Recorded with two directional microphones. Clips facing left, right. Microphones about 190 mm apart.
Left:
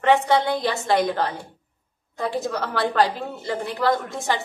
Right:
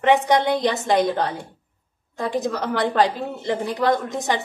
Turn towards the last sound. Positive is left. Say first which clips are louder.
# right 2 dB
turn(degrees=-20)  # may be behind; listen again after turning